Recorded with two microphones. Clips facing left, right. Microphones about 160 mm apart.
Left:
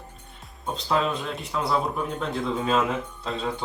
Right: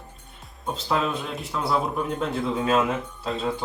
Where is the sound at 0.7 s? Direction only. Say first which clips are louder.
Even; centre (ahead or behind).